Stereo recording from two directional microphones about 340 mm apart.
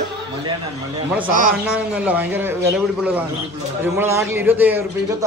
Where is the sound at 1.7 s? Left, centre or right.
Centre.